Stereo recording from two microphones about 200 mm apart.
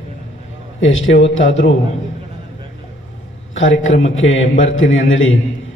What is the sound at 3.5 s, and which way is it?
A man's voice, 75° left (ahead or behind).